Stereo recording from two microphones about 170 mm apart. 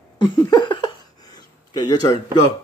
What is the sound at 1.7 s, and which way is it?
Speech, 25° left (ahead or behind).